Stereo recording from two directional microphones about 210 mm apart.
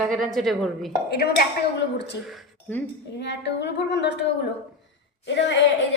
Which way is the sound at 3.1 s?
55° left (ahead or behind).